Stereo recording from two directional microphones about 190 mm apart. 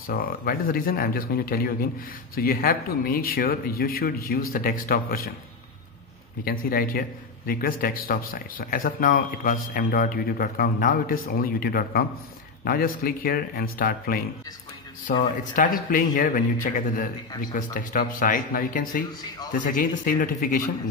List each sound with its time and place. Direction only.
0.0 s a man's voice: 50° left (ahead or behind)
6.4 s a man's voice: 50° left (ahead or behind)